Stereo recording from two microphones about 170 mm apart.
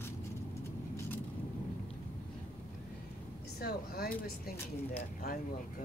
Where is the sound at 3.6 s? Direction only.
65° left (ahead or behind).